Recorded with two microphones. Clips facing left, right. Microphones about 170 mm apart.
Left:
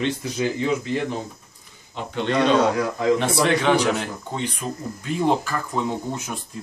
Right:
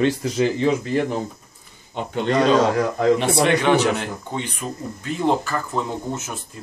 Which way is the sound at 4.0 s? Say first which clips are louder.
Even; 5° right (ahead or behind).